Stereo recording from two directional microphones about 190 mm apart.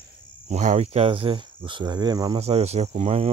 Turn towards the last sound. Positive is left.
turn(degrees=-35)  # may be behind; listen again after turning